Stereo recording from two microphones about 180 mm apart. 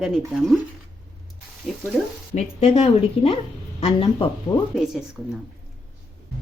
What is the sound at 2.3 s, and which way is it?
A woman's voice, 40° left (ahead or behind).